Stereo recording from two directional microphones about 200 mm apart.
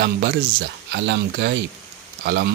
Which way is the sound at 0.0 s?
55° right (ahead or behind).